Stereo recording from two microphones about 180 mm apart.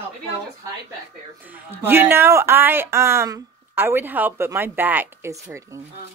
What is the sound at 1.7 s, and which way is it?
Speech, 10° right (ahead or behind).